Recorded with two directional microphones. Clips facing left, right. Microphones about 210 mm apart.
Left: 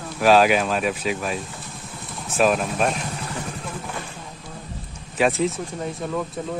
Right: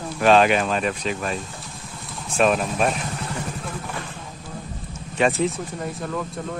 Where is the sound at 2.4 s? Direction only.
Centre (ahead or behind).